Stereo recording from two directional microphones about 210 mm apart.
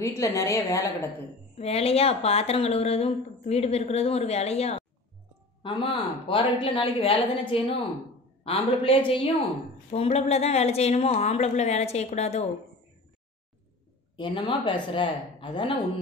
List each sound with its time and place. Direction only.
0.0 s a woman's voice: 15° left (ahead or behind)
1.6 s a woman's voice: 30° left (ahead or behind)
14.1 s speech: 25° left (ahead or behind)